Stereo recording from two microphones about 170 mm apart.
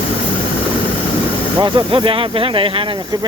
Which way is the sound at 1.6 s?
30° right (ahead or behind).